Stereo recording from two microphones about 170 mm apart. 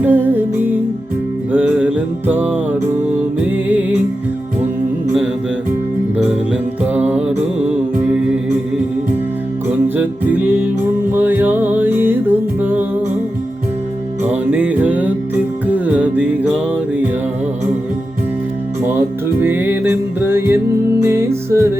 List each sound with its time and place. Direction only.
0.0 s music: 10° right (ahead or behind)
6.1 s music: 5° right (ahead or behind)
10.0 s music: 10° right (ahead or behind)
14.3 s music: 10° right (ahead or behind)
18.9 s music: 10° right (ahead or behind)